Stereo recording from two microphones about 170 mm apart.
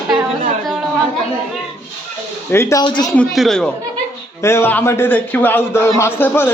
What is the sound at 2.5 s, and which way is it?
Speech, 15° left (ahead or behind).